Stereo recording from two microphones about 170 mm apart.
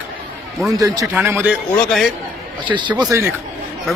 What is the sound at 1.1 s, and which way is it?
Speech, 10° right (ahead or behind).